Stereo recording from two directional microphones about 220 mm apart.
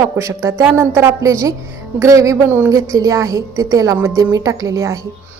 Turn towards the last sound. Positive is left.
turn(degrees=-15)  # may be behind; listen again after turning